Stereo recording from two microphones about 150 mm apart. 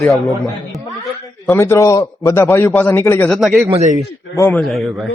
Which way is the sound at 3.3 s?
Centre (ahead or behind).